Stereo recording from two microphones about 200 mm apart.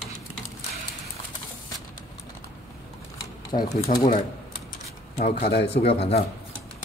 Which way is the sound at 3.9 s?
45° left (ahead or behind).